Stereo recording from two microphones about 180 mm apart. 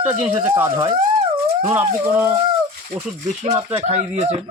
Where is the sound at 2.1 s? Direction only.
15° right (ahead or behind).